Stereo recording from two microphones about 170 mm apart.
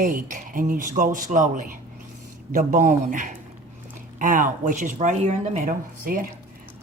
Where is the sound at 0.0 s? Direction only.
50° right (ahead or behind).